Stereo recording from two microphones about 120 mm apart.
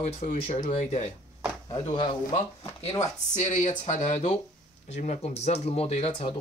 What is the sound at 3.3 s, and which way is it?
Speech, 90° left.